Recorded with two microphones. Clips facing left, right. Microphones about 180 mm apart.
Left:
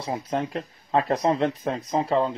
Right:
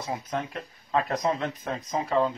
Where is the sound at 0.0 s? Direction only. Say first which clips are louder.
Left 4 dB; 30° left (ahead or behind).